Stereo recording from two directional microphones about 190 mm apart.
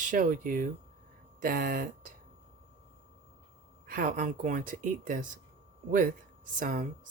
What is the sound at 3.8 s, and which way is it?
Speech, 50° right (ahead or behind).